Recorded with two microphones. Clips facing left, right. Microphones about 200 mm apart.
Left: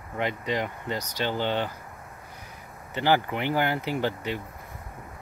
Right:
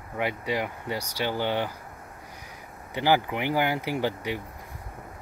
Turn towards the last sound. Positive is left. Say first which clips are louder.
# even
turn(degrees=-15)  # may be behind; listen again after turning